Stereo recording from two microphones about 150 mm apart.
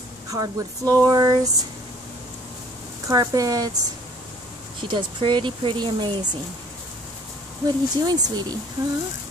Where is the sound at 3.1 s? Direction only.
25° right (ahead or behind).